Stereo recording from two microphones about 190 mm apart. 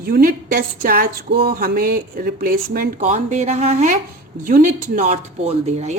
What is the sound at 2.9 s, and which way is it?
Speech, 35° right (ahead or behind).